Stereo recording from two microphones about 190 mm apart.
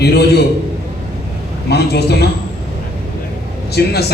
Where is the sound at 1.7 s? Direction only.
60° left (ahead or behind).